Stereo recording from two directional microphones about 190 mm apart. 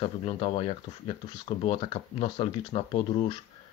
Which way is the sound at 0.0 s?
30° left (ahead or behind).